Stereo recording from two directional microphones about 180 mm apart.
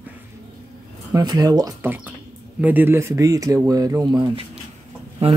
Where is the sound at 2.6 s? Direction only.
10° right (ahead or behind).